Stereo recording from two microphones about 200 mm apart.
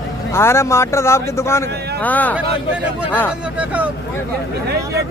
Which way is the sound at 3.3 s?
5° right (ahead or behind).